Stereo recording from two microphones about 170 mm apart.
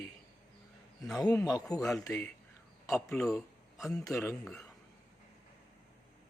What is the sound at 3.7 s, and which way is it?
Speech, centre (ahead or behind).